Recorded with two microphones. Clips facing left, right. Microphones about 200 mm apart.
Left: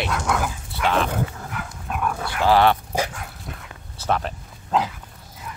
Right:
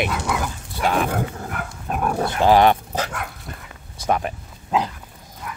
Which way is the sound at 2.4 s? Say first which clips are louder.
Right 2 dB; 15° right (ahead or behind).